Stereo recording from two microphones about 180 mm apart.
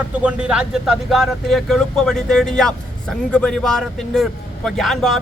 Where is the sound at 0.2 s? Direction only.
5° right (ahead or behind).